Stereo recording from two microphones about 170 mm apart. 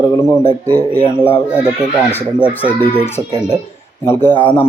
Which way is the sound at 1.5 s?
5° right (ahead or behind).